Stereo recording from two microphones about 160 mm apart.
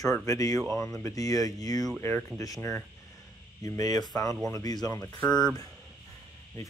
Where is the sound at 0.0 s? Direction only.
20° left (ahead or behind).